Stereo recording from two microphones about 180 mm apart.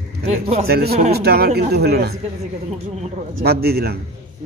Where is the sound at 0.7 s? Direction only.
60° right (ahead or behind).